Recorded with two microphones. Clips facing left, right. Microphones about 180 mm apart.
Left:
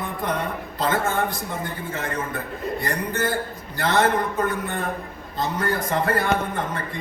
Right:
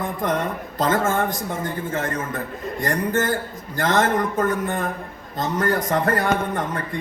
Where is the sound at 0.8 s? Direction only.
45° right (ahead or behind).